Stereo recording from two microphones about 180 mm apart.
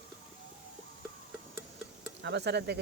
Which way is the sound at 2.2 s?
70° right (ahead or behind).